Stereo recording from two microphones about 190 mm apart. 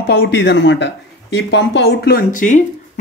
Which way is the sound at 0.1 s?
60° left (ahead or behind).